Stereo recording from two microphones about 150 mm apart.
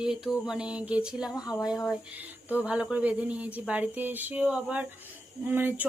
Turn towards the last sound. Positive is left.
turn(degrees=-15)  # may be behind; listen again after turning